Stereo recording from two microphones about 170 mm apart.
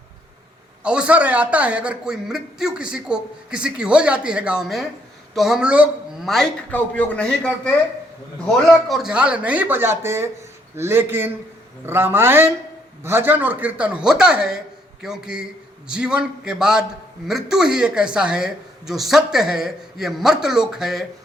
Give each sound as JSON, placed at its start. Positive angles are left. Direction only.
{"t": 0.9, "sound": "a man's voice", "side_deg": -5}